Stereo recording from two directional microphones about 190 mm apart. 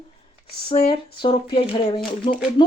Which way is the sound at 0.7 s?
30° left (ahead or behind).